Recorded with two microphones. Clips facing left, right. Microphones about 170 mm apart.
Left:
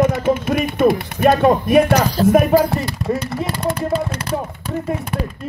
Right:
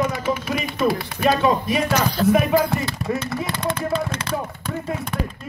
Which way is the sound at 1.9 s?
40° left (ahead or behind).